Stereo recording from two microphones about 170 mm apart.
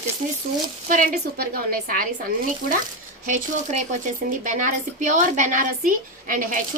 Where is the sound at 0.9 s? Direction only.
55° right (ahead or behind).